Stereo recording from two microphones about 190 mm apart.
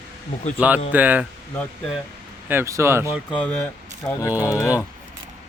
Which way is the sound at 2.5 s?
15° right (ahead or behind).